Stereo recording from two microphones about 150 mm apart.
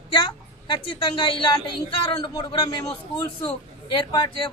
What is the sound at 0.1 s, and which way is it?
A woman's voice, 35° left (ahead or behind).